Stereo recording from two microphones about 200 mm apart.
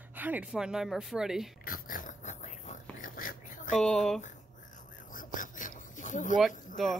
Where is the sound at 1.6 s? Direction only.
45° left (ahead or behind).